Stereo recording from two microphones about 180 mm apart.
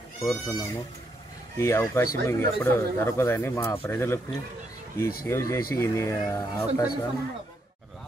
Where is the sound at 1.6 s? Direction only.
15° left (ahead or behind).